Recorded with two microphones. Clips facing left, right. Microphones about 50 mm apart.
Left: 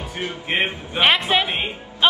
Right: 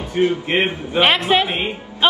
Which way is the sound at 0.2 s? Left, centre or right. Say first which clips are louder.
Right 6 dB; centre.